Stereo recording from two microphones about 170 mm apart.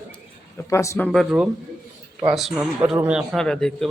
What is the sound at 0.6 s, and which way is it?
Speech, 20° left (ahead or behind).